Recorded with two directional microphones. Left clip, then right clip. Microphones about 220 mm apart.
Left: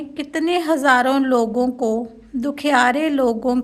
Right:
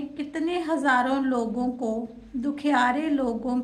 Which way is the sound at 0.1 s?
45° left (ahead or behind).